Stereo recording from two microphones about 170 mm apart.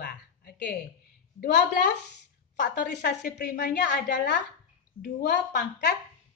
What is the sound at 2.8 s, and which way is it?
Speech, 80° left.